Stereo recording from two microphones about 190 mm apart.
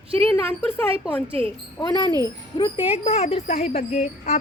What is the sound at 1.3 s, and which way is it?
Speech, 30° right (ahead or behind).